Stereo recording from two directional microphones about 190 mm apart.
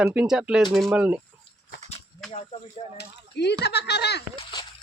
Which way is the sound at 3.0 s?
60° left (ahead or behind).